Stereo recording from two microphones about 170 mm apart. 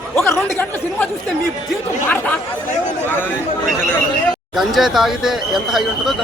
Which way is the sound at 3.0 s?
10° left (ahead or behind).